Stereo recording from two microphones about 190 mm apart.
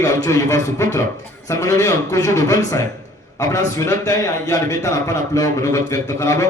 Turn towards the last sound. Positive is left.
turn(degrees=15)  # may be behind; listen again after turning